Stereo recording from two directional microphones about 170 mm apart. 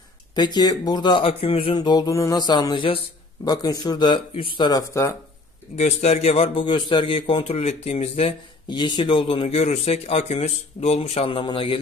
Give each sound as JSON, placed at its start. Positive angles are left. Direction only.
{"t": 0.3, "sound": "speech", "side_deg": 25}
{"t": 1.8, "sound": "speech", "side_deg": 25}
{"t": 5.8, "sound": "a man's voice", "side_deg": 40}